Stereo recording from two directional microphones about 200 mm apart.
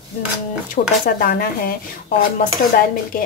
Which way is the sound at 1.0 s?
45° left (ahead or behind).